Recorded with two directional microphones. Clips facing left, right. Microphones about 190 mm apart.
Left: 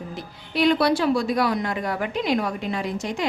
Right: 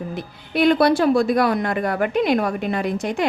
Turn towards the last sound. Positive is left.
turn(degrees=-55)  # may be behind; listen again after turning